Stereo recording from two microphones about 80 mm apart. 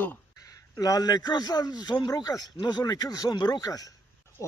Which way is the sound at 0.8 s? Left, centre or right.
Left.